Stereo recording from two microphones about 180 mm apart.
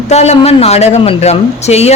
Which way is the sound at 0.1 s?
35° left (ahead or behind).